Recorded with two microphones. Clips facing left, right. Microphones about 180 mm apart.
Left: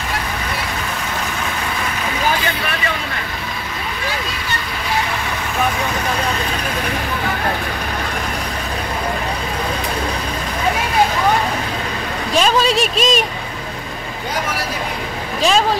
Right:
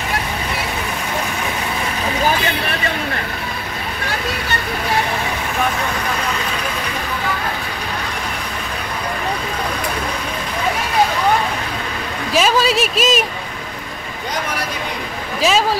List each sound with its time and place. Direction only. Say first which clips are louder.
12.4 s speech: even; 5° right (ahead or behind)
15.4 s speech: even; 5° right (ahead or behind)